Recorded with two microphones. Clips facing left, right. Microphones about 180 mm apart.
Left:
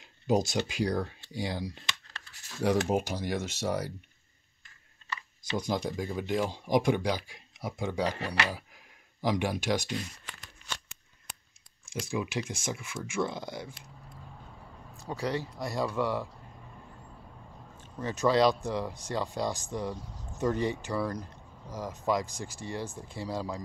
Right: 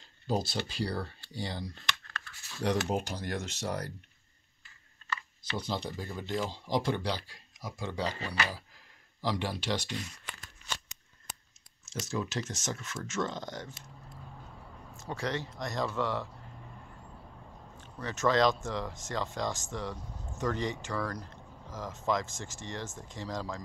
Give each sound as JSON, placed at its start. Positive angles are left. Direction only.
{"t": 0.0, "sound": "speech", "side_deg": 15}
{"t": 5.5, "sound": "speech", "side_deg": 15}
{"t": 7.6, "sound": "speech", "side_deg": 25}
{"t": 7.9, "sound": "speech", "side_deg": 10}
{"t": 11.8, "sound": "speech", "side_deg": 10}
{"t": 15.0, "sound": "speech", "side_deg": 10}
{"t": 18.0, "sound": "speech", "side_deg": 15}